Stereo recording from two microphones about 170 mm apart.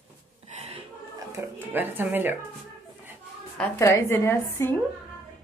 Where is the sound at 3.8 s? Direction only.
15° left (ahead or behind).